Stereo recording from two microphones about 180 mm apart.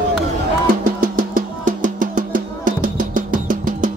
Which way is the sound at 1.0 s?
50° right (ahead or behind).